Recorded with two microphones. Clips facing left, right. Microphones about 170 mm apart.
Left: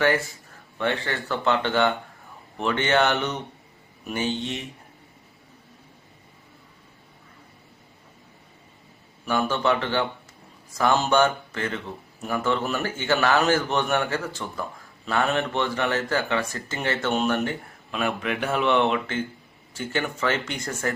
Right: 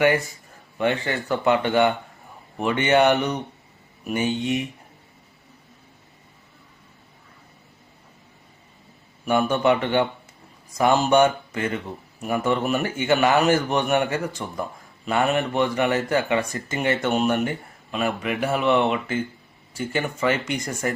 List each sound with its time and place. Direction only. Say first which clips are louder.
0.8 s speech: right 3 dB; 15° right (ahead or behind)
9.2 s speech: right 4 dB; 15° right (ahead or behind)
17.9 s speech: right 2 dB; centre (ahead or behind)